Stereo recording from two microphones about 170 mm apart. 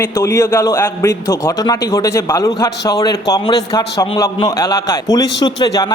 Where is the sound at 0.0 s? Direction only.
15° left (ahead or behind).